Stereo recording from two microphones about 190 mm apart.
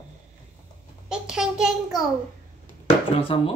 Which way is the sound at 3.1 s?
30° left (ahead or behind).